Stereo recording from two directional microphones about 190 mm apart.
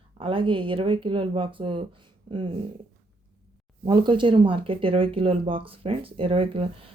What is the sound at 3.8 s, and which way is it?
Speech, 25° right (ahead or behind).